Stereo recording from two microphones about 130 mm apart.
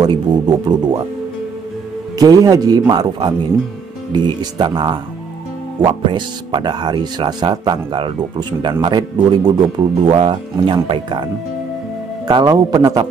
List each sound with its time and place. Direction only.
0.0 s speech: 35° right (ahead or behind)
2.1 s speech: 30° right (ahead or behind)
12.3 s speech: 30° right (ahead or behind)